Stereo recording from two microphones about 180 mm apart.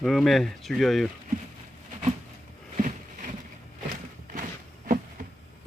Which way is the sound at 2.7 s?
45° right (ahead or behind).